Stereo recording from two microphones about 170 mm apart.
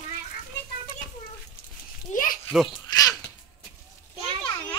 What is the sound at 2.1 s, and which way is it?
Children playing, 55° left (ahead or behind).